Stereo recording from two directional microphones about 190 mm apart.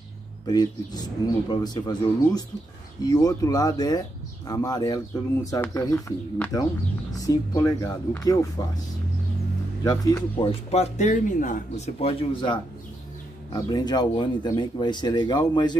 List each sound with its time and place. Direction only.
0.5 s speech: 20° left (ahead or behind)
9.8 s speech: 25° left (ahead or behind)